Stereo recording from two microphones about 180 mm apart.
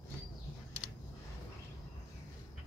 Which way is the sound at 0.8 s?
Centre (ahead or behind).